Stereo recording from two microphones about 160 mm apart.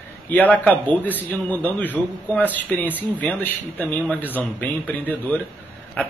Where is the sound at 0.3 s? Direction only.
10° left (ahead or behind).